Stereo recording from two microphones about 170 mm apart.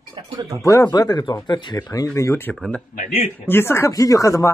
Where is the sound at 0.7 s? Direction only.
20° left (ahead or behind).